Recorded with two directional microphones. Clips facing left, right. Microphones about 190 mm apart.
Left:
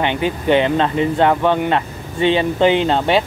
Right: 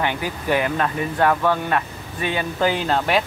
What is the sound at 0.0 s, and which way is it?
Speech, 25° left (ahead or behind).